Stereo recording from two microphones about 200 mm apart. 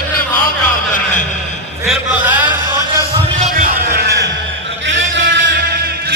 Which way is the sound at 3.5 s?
45° right (ahead or behind).